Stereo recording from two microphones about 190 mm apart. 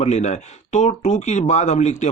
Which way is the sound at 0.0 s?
35° left (ahead or behind).